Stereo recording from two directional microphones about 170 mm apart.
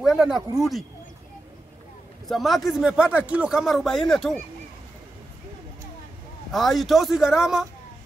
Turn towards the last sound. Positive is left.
turn(degrees=-5)  # may be behind; listen again after turning